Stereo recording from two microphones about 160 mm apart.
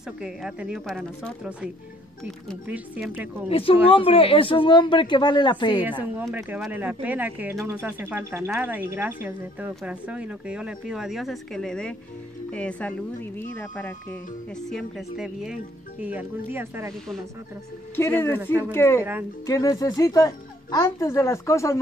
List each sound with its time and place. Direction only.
0.2 s speech: 5° right (ahead or behind)
2.7 s speech: 10° right (ahead or behind)
3.4 s speech: 35° left (ahead or behind)
5.8 s speech: 10° right (ahead or behind)
17.9 s speech: 15° left (ahead or behind)